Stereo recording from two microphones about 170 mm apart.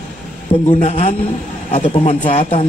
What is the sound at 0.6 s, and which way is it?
A man's voice, 40° left (ahead or behind).